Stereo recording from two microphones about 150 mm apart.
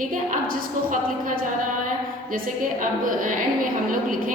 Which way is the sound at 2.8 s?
60° right (ahead or behind).